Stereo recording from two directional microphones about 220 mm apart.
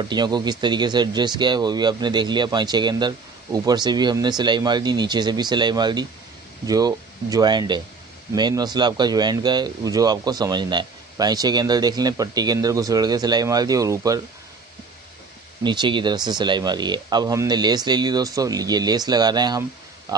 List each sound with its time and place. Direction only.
0.0 s speech: 20° right (ahead or behind)
15.6 s speech: 20° right (ahead or behind)
20.1 s a sound: 15° right (ahead or behind)